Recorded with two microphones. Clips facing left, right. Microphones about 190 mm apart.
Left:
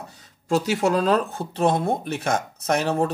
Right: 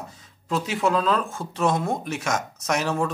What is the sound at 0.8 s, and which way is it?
Speech, 40° left (ahead or behind).